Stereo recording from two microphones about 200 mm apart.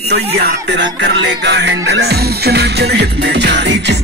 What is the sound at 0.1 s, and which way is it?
Music, 60° right (ahead or behind).